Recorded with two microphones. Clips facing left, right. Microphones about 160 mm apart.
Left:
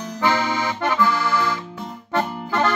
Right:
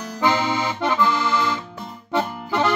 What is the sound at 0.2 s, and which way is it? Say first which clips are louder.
Accordion: even; 20° right (ahead or behind).